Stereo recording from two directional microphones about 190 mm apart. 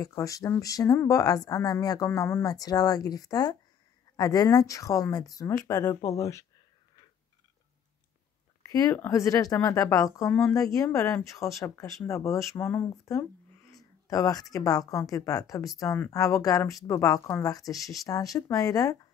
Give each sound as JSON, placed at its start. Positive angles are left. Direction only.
{"t": 0.0, "sound": "a woman's voice", "side_deg": 20}
{"t": 8.6, "sound": "a woman's voice", "side_deg": 15}